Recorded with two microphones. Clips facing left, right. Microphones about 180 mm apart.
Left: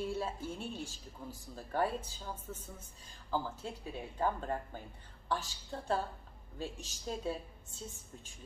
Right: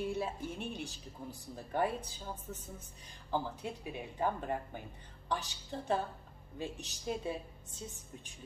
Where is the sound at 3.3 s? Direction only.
15° right (ahead or behind).